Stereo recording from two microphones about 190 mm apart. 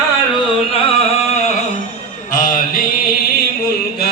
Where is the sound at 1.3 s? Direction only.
35° left (ahead or behind).